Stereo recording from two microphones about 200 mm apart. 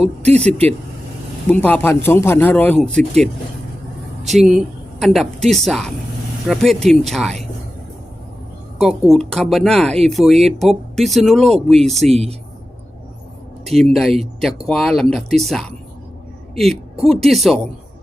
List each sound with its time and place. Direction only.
0.0 s speech: 35° right (ahead or behind)
1.5 s a man's voice: 10° left (ahead or behind)
4.4 s a woman's voice: centre (ahead or behind)
8.8 s speech: centre (ahead or behind)
12.1 s speech: 30° right (ahead or behind)
13.7 s speech: centre (ahead or behind)